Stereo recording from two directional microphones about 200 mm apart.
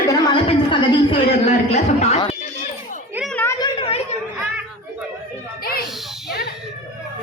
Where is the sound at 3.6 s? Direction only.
30° left (ahead or behind).